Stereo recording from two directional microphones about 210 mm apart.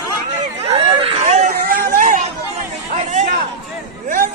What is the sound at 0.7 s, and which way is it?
Chatter, 30° right (ahead or behind).